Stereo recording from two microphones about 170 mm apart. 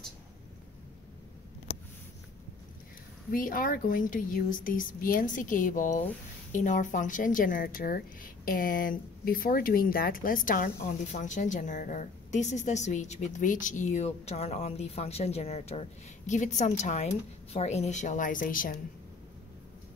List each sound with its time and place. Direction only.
3.3 s speech: 55° left (ahead or behind)